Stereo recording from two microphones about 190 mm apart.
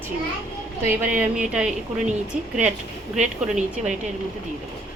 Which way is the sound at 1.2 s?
5° right (ahead or behind).